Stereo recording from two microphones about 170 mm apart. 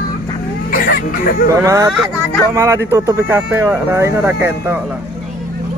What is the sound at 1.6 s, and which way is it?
Speech, 20° right (ahead or behind).